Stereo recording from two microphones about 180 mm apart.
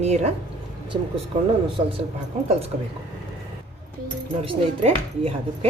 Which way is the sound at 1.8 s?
25° right (ahead or behind).